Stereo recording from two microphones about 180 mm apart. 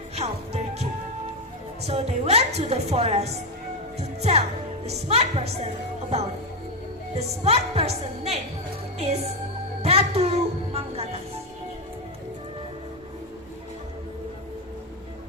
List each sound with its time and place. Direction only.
0.2 s music: 35° right (ahead or behind)
1.9 s a woman's voice: 35° right (ahead or behind)
9.8 s music: 35° right (ahead or behind)